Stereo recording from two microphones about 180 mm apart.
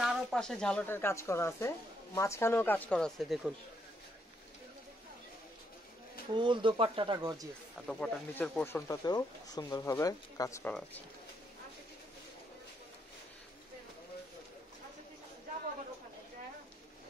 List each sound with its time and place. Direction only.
0.0 s speech: centre (ahead or behind)
6.3 s speech: 25° right (ahead or behind)
7.8 s speech: 5° left (ahead or behind); by 10.6 s 20° left (ahead or behind)